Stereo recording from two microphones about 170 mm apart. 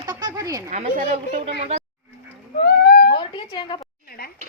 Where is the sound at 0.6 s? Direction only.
50° right (ahead or behind).